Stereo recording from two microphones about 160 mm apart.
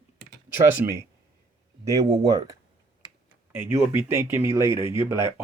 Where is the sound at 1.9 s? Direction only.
20° right (ahead or behind).